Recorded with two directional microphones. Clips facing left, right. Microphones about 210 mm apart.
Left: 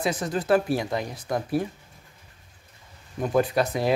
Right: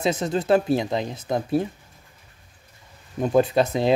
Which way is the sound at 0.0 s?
25° right (ahead or behind).